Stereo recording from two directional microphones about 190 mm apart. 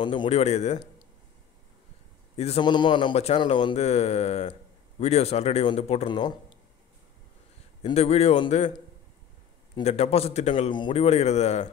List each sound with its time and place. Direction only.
0.0 s a man's voice: 25° left (ahead or behind)
2.3 s a man's voice: 30° left (ahead or behind)
7.8 s a man's voice: 35° left (ahead or behind)
9.8 s a man's voice: 30° left (ahead or behind)